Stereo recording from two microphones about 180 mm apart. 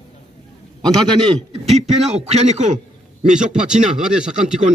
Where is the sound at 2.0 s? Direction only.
35° right (ahead or behind).